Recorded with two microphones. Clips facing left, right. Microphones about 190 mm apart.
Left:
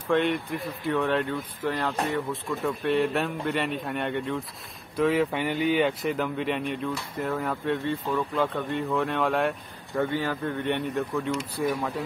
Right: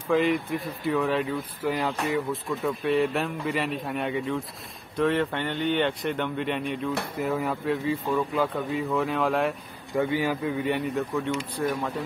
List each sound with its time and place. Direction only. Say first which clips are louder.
0.1 s speech: right 1 dB; centre (ahead or behind)
11.6 s speech: left 1 dB; 10° left (ahead or behind)